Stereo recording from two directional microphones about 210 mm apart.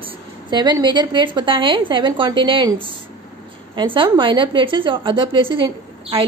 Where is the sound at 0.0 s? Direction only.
25° right (ahead or behind).